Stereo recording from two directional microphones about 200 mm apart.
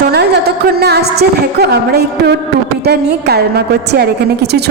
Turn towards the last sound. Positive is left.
turn(degrees=-55)  # may be behind; listen again after turning